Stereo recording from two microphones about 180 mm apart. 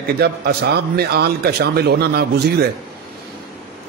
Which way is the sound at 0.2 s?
65° right (ahead or behind).